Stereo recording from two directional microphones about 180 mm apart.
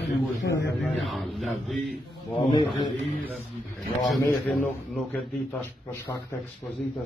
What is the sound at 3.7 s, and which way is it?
A man's voice, centre (ahead or behind).